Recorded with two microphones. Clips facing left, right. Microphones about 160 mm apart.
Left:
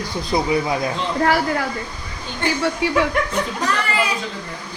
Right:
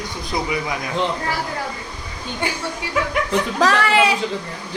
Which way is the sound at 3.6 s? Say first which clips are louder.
Right 8 dB; 90° right.